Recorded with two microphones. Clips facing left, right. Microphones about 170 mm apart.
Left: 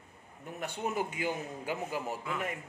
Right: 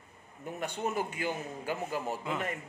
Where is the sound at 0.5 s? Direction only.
5° left (ahead or behind).